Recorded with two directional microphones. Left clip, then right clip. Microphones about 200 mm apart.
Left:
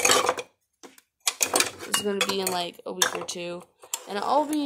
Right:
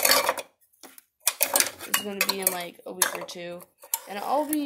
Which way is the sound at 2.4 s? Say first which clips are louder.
Left 4 dB; 30° left (ahead or behind).